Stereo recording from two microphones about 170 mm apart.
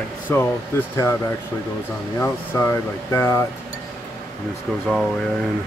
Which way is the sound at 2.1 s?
15° left (ahead or behind).